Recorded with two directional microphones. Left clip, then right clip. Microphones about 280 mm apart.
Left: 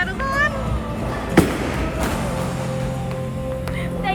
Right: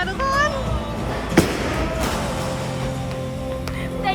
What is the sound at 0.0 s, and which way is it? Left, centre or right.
Music, centre.